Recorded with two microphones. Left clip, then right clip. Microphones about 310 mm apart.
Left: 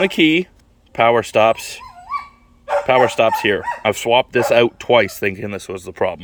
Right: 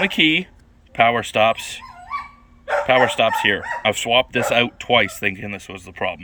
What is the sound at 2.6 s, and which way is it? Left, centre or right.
Speech, centre.